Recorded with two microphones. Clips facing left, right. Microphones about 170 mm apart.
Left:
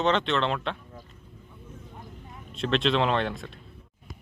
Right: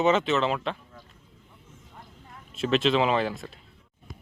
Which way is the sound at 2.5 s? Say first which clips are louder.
Right 2 dB; 5° right (ahead or behind).